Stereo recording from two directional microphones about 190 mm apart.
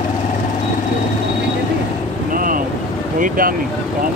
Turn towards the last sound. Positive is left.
turn(degrees=-45)  # may be behind; listen again after turning